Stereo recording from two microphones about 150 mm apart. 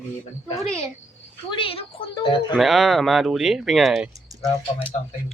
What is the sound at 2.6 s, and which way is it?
Speech, centre (ahead or behind).